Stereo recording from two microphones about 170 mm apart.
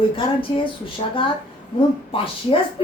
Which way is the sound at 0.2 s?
30° left (ahead or behind).